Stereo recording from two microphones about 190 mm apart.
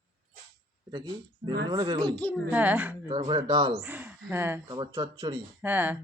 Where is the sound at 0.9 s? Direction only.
20° right (ahead or behind).